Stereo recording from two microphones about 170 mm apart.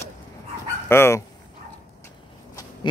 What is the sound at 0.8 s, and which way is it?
Speech, 15° left (ahead or behind).